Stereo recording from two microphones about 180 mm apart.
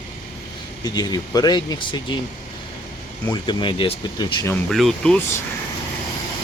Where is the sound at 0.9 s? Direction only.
20° left (ahead or behind).